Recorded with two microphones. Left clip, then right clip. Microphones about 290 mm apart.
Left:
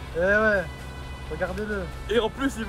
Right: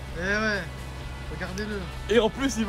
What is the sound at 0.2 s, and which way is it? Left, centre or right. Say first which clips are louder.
Speech: left 6 dB; centre.